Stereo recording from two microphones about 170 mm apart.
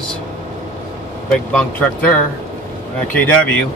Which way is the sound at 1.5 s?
5° left (ahead or behind).